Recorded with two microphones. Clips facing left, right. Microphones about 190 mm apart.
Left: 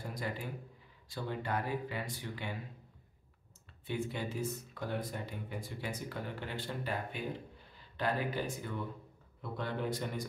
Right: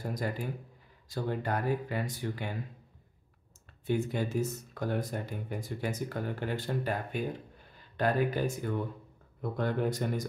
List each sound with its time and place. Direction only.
0.0 s speech: 45° right (ahead or behind)
3.8 s speech: 45° right (ahead or behind)